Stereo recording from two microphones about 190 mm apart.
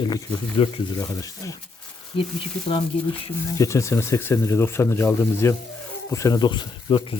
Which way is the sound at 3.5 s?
15° left (ahead or behind).